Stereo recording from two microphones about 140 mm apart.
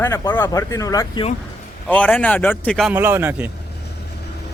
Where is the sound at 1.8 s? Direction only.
10° left (ahead or behind).